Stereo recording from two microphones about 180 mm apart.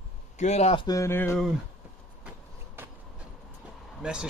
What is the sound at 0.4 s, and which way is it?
Speech, 40° left (ahead or behind).